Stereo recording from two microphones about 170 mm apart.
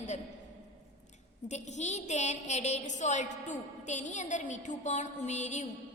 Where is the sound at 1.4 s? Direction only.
45° left (ahead or behind).